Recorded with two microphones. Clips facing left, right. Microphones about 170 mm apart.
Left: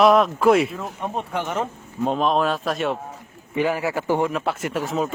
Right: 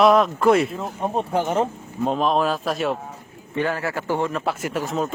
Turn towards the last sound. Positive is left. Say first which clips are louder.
# even
turn(degrees=0)  # may be behind; listen again after turning